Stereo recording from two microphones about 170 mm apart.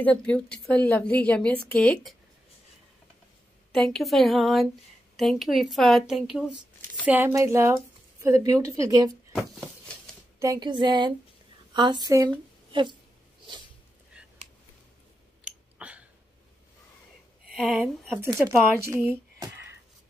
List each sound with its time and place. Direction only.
0.0 s a woman's voice: 5° left (ahead or behind)
3.7 s a woman's voice: 5° left (ahead or behind); by 9.1 s 20° right (ahead or behind)
10.4 s speech: 25° right (ahead or behind)
14.2 s a sound: 5° right (ahead or behind)
15.4 s a sound: 5° right (ahead or behind)
17.5 s speech: centre (ahead or behind)
18.2 s speech: 15° right (ahead or behind)